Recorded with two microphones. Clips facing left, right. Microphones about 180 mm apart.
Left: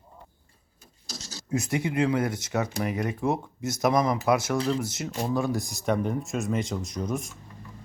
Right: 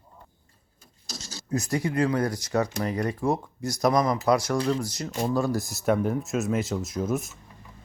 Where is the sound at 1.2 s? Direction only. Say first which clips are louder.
Right 1 dB; 50° right (ahead or behind).